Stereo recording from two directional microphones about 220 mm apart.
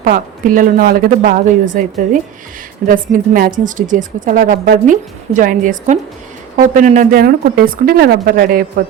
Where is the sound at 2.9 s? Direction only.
40° right (ahead or behind).